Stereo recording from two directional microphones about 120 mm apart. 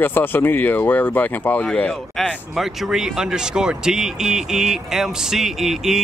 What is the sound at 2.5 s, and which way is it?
Speech, 5° right (ahead or behind).